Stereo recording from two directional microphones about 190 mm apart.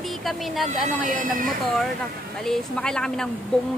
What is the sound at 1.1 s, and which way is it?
Speech, 45° right (ahead or behind).